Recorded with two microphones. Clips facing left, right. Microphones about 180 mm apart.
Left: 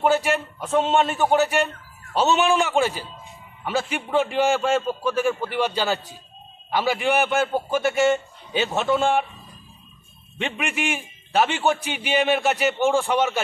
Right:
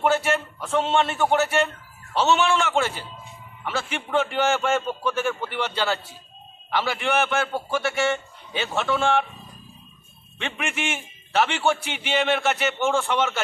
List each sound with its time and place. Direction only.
0.0 s a man's voice: 15° left (ahead or behind)
10.3 s a man's voice: 15° left (ahead or behind)
12.4 s speech: 35° left (ahead or behind)
12.7 s a man's voice: 15° left (ahead or behind)